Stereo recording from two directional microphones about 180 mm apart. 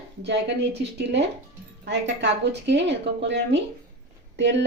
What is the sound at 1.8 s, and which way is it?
A woman's voice, 70° right (ahead or behind).